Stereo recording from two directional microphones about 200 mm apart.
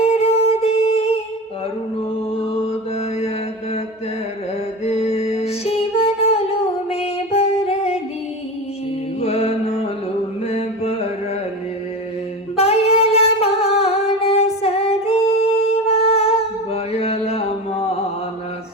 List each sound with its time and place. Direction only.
0.0 s music: 30° left (ahead or behind)
4.9 s music: 30° left (ahead or behind)
9.2 s mantra: 30° left (ahead or behind)
12.5 s singing: 30° left (ahead or behind)